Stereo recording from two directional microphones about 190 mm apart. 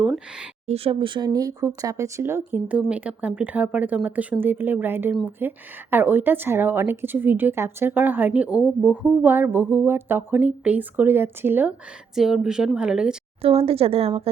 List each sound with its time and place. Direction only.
0.0 s speech: 5° right (ahead or behind)
0.7 s a woman's voice: 25° right (ahead or behind); by 13.1 s 5° right (ahead or behind)
13.4 s speech: 30° right (ahead or behind)